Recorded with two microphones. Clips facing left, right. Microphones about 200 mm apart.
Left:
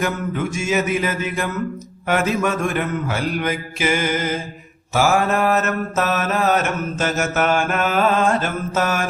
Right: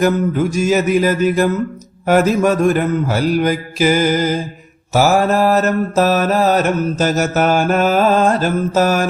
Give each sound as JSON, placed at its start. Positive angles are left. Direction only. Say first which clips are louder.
{"t": 0.0, "sound": "mantra", "louder": "right 8 dB", "side_deg": -40}